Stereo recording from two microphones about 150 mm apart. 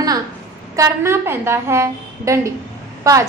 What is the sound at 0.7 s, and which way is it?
A woman's voice, 20° right (ahead or behind).